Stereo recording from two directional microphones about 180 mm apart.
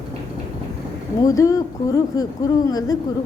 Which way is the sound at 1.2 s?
20° left (ahead or behind).